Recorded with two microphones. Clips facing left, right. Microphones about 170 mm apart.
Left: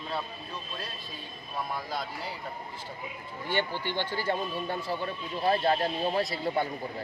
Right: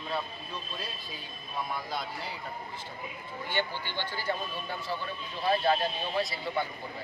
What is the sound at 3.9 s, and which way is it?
Speech, 30° left (ahead or behind).